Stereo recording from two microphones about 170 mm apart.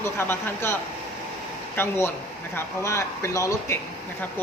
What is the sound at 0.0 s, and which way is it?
Speech, 15° left (ahead or behind).